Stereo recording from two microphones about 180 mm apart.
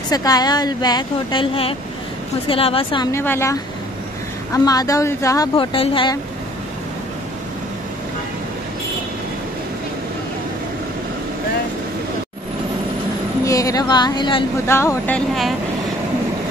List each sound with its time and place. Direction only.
0.1 s a woman's voice: 20° left (ahead or behind)
3.1 s speech: 15° left (ahead or behind)
4.6 s speech: 20° left (ahead or behind)
13.5 s speech: 20° left (ahead or behind)
14.7 s speech: 15° left (ahead or behind)